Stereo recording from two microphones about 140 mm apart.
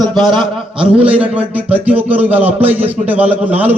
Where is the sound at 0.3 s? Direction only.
35° right (ahead or behind).